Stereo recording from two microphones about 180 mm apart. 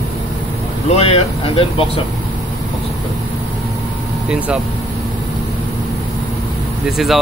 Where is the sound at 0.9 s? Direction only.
35° left (ahead or behind).